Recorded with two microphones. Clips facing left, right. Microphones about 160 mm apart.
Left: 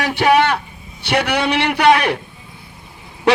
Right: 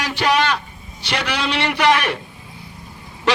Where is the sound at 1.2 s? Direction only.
60° left (ahead or behind).